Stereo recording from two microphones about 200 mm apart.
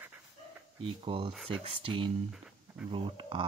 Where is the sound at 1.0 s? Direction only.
25° right (ahead or behind).